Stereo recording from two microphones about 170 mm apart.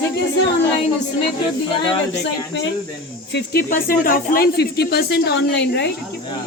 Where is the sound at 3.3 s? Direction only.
65° left (ahead or behind).